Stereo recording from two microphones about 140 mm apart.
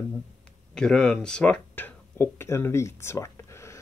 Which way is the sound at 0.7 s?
5° left (ahead or behind).